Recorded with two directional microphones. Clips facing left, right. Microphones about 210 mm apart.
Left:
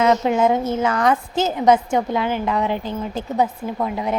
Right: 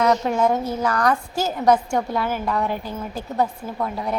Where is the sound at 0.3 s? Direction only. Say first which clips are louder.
Left 3 dB; 25° left (ahead or behind).